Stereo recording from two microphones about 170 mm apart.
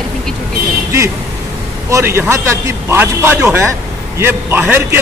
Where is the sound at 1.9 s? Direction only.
15° right (ahead or behind).